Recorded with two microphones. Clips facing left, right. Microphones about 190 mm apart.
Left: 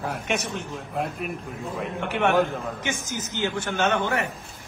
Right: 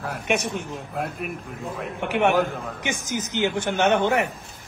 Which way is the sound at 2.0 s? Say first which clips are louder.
Right 1 dB; 15° right (ahead or behind).